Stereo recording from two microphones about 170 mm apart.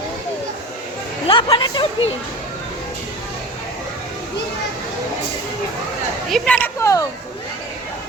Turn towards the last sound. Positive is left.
turn(degrees=15)  # may be behind; listen again after turning